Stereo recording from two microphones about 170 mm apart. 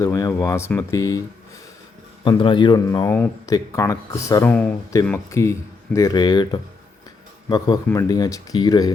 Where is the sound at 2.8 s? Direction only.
20° left (ahead or behind).